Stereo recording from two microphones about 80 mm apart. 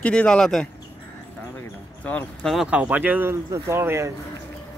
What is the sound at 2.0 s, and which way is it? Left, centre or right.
Speech, centre.